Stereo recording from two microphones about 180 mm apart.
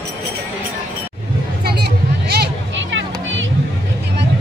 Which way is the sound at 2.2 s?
65° right (ahead or behind).